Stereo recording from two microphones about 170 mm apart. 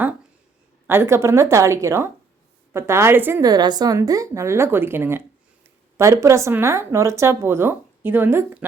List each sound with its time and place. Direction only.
0.9 s speech: 15° right (ahead or behind)